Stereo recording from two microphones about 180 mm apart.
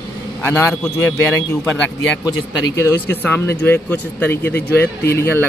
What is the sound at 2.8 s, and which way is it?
Speech, 15° left (ahead or behind).